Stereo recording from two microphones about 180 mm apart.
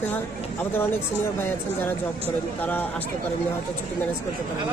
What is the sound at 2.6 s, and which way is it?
Speech, 10° left (ahead or behind).